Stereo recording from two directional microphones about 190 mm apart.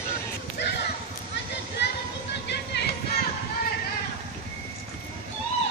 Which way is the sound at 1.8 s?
60° left (ahead or behind).